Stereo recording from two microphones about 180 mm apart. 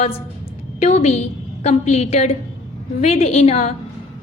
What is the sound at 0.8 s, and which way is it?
A woman's voice, 35° left (ahead or behind).